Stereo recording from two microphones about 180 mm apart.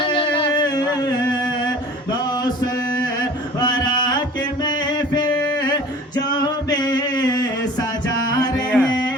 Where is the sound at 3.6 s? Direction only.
20° left (ahead or behind).